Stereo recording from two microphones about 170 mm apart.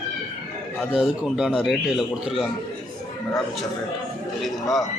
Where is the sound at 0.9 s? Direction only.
Centre (ahead or behind).